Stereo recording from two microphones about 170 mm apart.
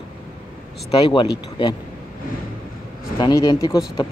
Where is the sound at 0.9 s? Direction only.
30° left (ahead or behind).